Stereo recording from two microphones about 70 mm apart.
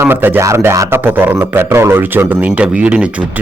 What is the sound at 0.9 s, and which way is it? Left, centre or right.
A man's voice, right.